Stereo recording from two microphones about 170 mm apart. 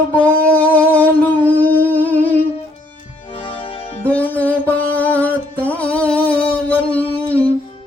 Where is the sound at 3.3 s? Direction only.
30° left (ahead or behind).